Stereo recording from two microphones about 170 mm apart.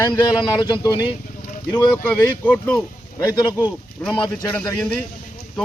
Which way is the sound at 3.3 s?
25° left (ahead or behind).